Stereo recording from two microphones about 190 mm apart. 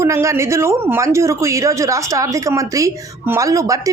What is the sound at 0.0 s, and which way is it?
Speech, 15° right (ahead or behind).